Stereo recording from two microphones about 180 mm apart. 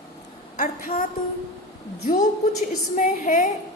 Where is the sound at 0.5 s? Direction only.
45° left (ahead or behind).